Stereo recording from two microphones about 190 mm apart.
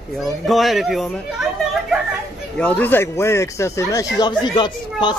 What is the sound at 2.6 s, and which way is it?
Speech, 10° left (ahead or behind).